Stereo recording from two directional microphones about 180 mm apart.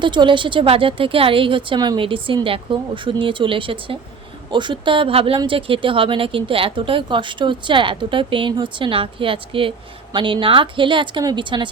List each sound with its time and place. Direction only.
0.0 s speech: 25° right (ahead or behind)